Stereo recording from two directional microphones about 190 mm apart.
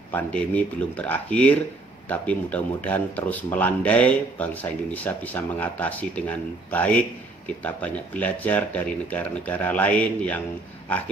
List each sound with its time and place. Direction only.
0.1 s speech: 5° left (ahead or behind)